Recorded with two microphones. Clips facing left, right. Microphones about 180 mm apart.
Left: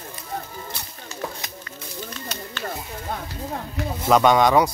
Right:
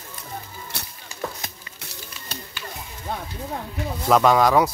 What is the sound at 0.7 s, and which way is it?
Music, 70° right (ahead or behind).